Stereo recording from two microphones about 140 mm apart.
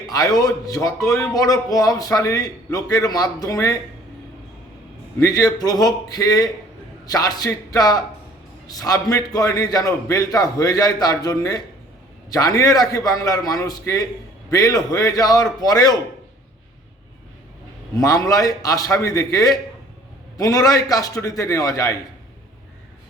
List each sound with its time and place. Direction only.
0.0 s a man's voice: 25° left (ahead or behind)
5.2 s a man's voice: 25° left (ahead or behind)
17.9 s a man's voice: 25° left (ahead or behind)